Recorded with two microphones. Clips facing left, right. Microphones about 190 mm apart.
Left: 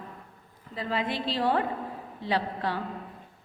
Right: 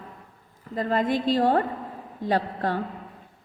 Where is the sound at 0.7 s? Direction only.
45° right (ahead or behind).